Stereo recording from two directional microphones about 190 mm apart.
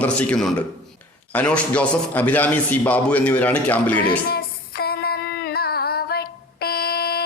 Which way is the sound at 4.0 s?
55° left (ahead or behind).